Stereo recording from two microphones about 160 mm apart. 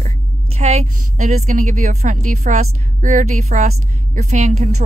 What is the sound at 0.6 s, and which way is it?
A woman's voice, 45° right (ahead or behind).